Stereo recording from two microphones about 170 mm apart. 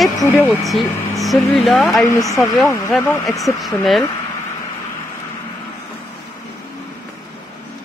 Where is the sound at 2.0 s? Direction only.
20° left (ahead or behind).